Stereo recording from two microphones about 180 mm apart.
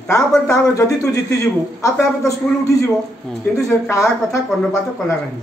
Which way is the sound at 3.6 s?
15° left (ahead or behind).